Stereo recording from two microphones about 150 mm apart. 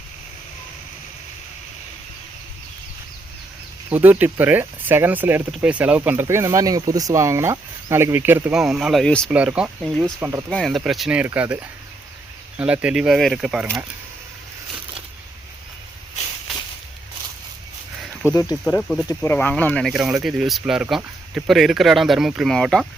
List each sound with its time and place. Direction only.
3.8 s speech: 10° right (ahead or behind)
8.5 s speech: 5° right (ahead or behind)
9.3 s speech: 10° right (ahead or behind)
10.0 s speech: 15° right (ahead or behind)
10.5 s speech: centre (ahead or behind)
18.0 s a sound: 5° left (ahead or behind)
18.6 s speech: 5° left (ahead or behind)
19.0 s speech: 15° left (ahead or behind)
19.9 s speech: 5° right (ahead or behind)